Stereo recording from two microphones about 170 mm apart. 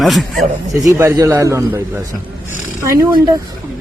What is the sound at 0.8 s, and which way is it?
A man's voice, 15° right (ahead or behind).